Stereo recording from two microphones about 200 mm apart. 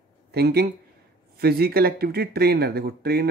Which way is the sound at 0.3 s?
50° right (ahead or behind).